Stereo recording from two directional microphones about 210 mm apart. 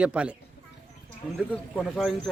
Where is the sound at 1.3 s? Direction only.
Centre (ahead or behind).